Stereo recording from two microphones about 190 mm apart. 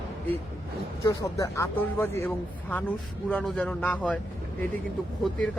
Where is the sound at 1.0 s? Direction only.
15° left (ahead or behind).